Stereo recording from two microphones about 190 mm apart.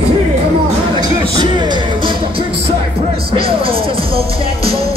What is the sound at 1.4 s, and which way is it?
Music, 25° right (ahead or behind).